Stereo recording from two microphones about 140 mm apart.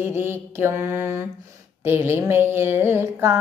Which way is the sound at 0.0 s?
15° right (ahead or behind).